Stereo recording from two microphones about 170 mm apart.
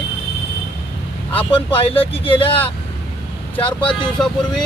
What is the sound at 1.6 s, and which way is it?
Speech, 30° left (ahead or behind).